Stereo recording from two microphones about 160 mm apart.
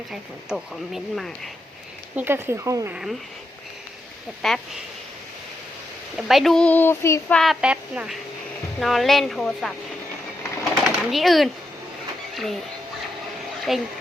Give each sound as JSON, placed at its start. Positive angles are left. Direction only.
{"t": 0.1, "sound": "speech", "side_deg": -5}
{"t": 2.1, "sound": "speech", "side_deg": -15}
{"t": 2.9, "sound": "speech", "side_deg": 0}
{"t": 4.4, "sound": "speech", "side_deg": 0}
{"t": 6.1, "sound": "speech", "side_deg": 0}
{"t": 7.3, "sound": "speech", "side_deg": 0}
{"t": 10.6, "sound": "a sound", "side_deg": 0}
{"t": 12.3, "sound": "speech", "side_deg": 0}
{"t": 13.7, "sound": "speech", "side_deg": 0}